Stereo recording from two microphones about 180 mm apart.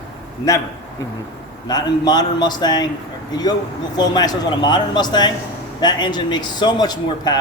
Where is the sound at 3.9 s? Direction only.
20° left (ahead or behind).